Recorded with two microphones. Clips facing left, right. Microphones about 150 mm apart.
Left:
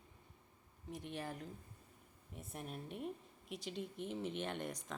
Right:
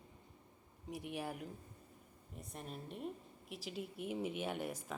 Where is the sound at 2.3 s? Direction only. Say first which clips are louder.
Left 1 dB; centre (ahead or behind).